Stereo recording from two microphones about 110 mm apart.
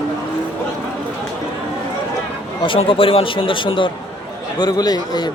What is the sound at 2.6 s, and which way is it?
Speech, 50° left (ahead or behind).